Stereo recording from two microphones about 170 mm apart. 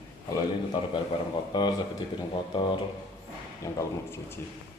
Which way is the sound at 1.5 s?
25° left (ahead or behind).